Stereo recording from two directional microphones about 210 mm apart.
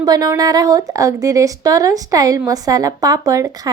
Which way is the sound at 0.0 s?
20° right (ahead or behind).